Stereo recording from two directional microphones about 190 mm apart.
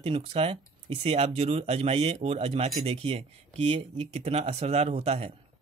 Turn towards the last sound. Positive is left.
turn(degrees=-30)  # may be behind; listen again after turning